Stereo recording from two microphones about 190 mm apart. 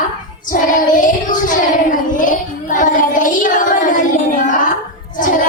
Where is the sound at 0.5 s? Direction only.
45° left (ahead or behind).